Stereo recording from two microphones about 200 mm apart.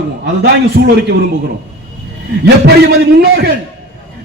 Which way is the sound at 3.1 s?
55° right (ahead or behind).